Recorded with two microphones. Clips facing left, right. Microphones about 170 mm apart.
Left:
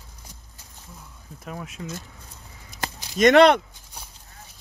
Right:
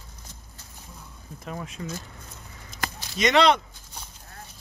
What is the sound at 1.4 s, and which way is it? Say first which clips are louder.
Speech: even; 5° left (ahead or behind).